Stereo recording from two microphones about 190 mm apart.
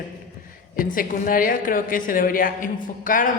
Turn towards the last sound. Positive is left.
turn(degrees=45)  # may be behind; listen again after turning